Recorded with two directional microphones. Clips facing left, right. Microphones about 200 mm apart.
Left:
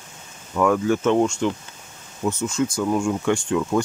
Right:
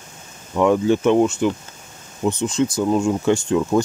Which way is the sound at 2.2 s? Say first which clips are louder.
Right 3 dB; 15° right (ahead or behind).